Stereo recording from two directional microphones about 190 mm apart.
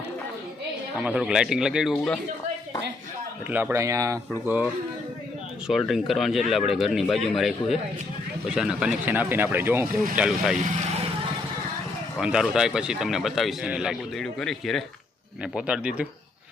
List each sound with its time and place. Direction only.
0.9 s speech: 5° right (ahead or behind)
3.5 s speech: 10° right (ahead or behind)
12.2 s speech: 5° right (ahead or behind)